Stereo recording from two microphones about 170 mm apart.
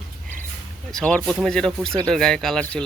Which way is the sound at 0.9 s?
5° left (ahead or behind).